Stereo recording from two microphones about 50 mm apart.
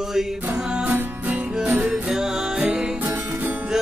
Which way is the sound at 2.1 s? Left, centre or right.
Centre.